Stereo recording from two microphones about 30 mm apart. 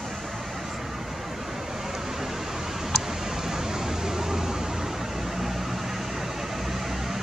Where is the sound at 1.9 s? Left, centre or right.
Centre.